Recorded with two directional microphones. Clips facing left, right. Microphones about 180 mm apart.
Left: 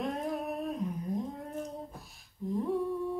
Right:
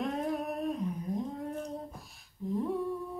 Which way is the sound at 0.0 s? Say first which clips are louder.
Right 1 dB; centre (ahead or behind).